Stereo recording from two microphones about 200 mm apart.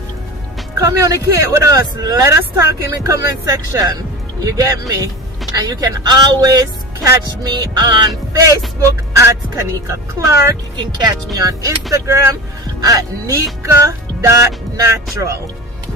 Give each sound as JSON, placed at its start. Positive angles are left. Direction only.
{"t": 0.7, "sound": "speech", "side_deg": -15}